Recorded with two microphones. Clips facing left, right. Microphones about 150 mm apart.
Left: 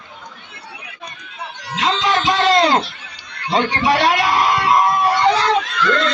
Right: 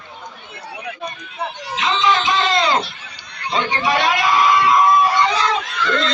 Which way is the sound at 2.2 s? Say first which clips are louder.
Left 3 dB; 80° left.